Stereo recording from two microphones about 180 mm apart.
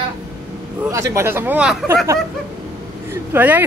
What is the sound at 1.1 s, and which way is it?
Speech, 15° right (ahead or behind).